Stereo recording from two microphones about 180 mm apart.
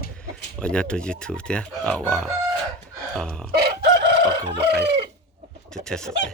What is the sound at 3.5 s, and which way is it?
Chicken, 60° right (ahead or behind).